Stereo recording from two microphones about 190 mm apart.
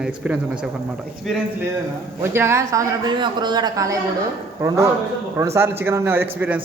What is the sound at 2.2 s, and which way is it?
Speech, 15° right (ahead or behind).